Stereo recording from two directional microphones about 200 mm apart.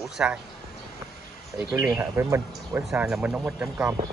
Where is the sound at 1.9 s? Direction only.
10° right (ahead or behind).